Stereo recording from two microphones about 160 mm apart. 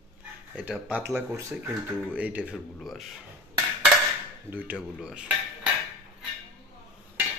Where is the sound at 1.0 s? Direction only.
20° right (ahead or behind); by 3.2 s centre (ahead or behind).